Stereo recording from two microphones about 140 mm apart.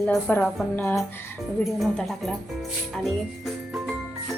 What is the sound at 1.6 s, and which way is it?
Speech, centre (ahead or behind).